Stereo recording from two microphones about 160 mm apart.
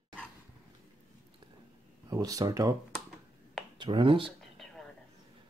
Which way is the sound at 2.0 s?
20° right (ahead or behind).